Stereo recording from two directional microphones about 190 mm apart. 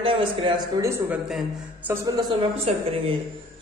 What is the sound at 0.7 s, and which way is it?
A man's voice, 15° right (ahead or behind).